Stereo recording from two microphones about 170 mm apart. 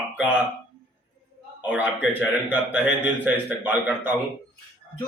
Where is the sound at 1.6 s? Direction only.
10° right (ahead or behind).